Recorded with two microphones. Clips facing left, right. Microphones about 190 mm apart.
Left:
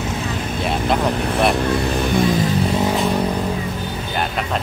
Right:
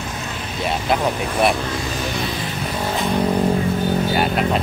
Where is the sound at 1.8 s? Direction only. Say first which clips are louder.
Left 6 dB; 60° left (ahead or behind).